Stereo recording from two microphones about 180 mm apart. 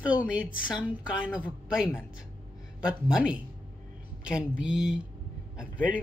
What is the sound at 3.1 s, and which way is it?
Speech, 5° right (ahead or behind).